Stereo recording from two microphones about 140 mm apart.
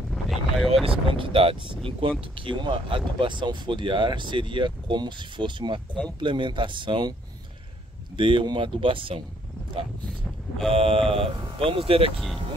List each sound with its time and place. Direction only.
0.1 s wind noise: centre (ahead or behind)
0.8 s speech: 40° right (ahead or behind)
8.2 s speech: 35° right (ahead or behind)
10.7 s speech: 40° right (ahead or behind)